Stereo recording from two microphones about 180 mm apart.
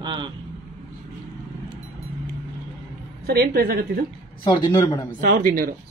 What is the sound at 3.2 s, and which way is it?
Speech, 60° right (ahead or behind).